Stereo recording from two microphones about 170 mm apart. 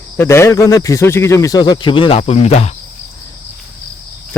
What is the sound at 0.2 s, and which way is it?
Speech, 15° left (ahead or behind).